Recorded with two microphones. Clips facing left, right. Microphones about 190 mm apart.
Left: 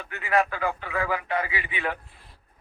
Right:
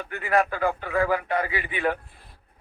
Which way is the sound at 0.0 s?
50° right (ahead or behind).